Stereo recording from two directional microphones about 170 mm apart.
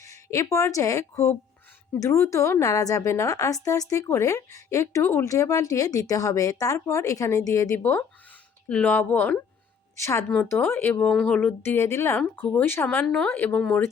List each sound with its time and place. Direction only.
0.0 s a woman's voice: 20° left (ahead or behind)